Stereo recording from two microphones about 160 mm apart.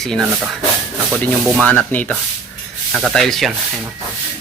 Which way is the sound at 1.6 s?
10° left (ahead or behind).